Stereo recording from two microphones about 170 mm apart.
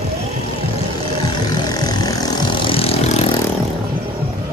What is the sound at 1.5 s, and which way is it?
Vehicle, 25° left (ahead or behind).